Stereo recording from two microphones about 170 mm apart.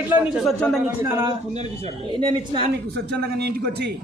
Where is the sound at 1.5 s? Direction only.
35° right (ahead or behind).